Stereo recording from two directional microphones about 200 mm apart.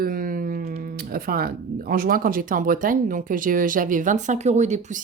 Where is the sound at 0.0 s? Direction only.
45° right (ahead or behind).